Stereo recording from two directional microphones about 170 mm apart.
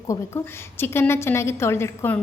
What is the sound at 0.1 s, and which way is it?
A woman's voice, 15° left (ahead or behind).